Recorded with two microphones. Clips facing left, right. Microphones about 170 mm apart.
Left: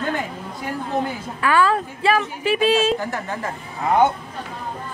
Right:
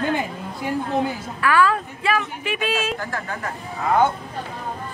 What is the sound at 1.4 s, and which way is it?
A woman's voice, 25° left (ahead or behind).